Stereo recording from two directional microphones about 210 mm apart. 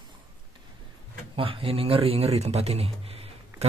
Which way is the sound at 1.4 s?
25° right (ahead or behind).